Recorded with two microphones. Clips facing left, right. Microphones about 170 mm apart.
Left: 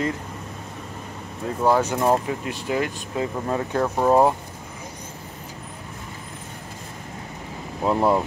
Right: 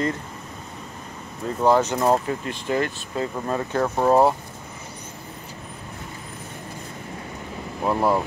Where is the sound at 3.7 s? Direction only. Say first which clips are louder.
Even; centre (ahead or behind).